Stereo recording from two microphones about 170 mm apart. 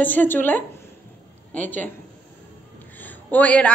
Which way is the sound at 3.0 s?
10° left (ahead or behind).